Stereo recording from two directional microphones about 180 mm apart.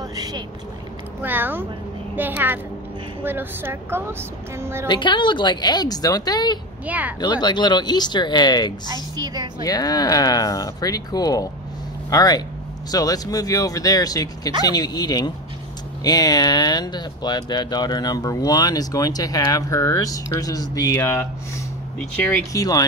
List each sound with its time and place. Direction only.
0.1 s vehicle: 20° right (ahead or behind)
1.2 s a woman's voice: 10° right (ahead or behind)
4.8 s speech: 25° left (ahead or behind)
6.9 s a woman's voice: 10° right (ahead or behind)
7.2 s speech: 25° left (ahead or behind)
22.5 s speech: 20° left (ahead or behind)